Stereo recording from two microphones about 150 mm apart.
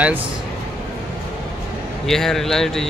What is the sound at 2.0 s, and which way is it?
Speech, centre (ahead or behind).